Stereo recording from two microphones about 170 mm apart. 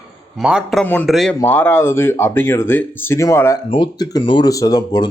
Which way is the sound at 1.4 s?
10° left (ahead or behind).